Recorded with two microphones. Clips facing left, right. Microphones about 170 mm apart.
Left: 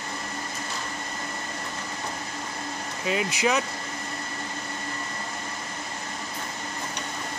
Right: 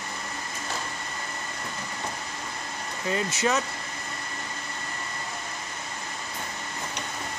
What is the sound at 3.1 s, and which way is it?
Speech, 15° left (ahead or behind).